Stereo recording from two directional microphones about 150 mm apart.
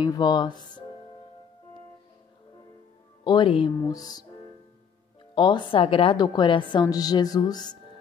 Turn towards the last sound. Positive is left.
turn(degrees=25)  # may be behind; listen again after turning